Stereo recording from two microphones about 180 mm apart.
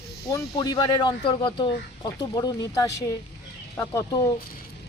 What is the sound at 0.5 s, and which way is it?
Speech, 20° left (ahead or behind).